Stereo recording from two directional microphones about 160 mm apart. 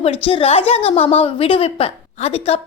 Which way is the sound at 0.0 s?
35° left (ahead or behind).